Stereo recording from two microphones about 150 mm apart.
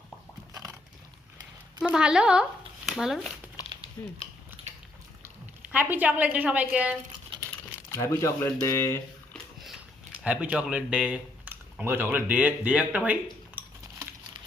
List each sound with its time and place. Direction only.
1.8 s speech: 5° right (ahead or behind)
4.0 s speech: 20° left (ahead or behind)
5.2 s a woman's voice: 10° right (ahead or behind)
7.9 s speech: 20° left (ahead or behind)
10.2 s speech: 10° right (ahead or behind)
13.6 s a sound: 10° right (ahead or behind)